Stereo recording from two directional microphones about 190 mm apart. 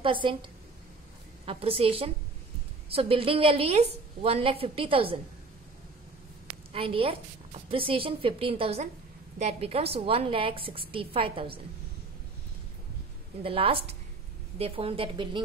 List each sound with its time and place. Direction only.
0.0 s a woman's voice: 25° right (ahead or behind)
1.4 s a woman's voice: 30° right (ahead or behind)
6.7 s a woman's voice: 30° right (ahead or behind)
13.4 s a woman's voice: 30° right (ahead or behind)